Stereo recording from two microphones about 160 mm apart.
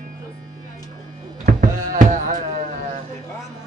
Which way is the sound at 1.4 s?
55° right (ahead or behind).